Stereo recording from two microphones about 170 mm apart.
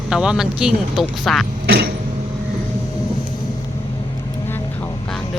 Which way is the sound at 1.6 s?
75° right (ahead or behind).